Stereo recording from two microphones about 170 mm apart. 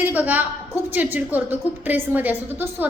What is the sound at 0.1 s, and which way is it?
A woman's voice, 10° right (ahead or behind).